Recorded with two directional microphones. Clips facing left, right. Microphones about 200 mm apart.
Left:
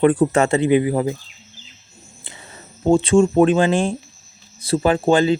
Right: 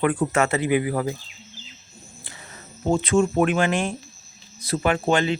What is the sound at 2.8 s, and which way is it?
Speech, 30° left (ahead or behind).